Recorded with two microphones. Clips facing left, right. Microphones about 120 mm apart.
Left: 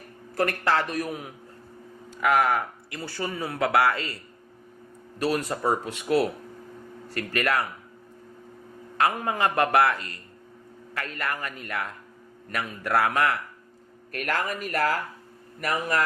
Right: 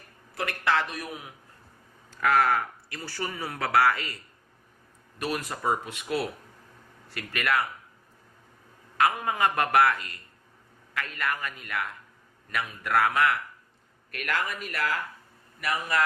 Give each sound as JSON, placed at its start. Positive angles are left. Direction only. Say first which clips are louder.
{"t": 0.3, "sound": "a man's voice", "louder": "left 3 dB", "side_deg": 40}
{"t": 2.2, "sound": "speech", "louder": "left 1 dB", "side_deg": 15}
{"t": 5.2, "sound": "speech", "louder": "left 4 dB", "side_deg": 30}
{"t": 9.0, "sound": "a man's voice", "louder": "left 1 dB", "side_deg": 30}